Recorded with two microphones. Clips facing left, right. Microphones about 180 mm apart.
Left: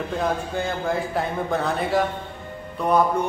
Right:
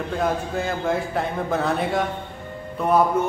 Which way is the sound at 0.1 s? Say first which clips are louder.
Right 2 dB; centre (ahead or behind).